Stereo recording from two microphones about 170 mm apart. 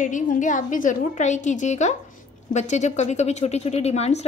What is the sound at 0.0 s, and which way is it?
A woman's voice, 50° left (ahead or behind).